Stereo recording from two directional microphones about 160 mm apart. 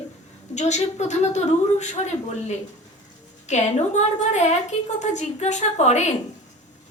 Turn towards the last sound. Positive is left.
turn(degrees=45)  # may be behind; listen again after turning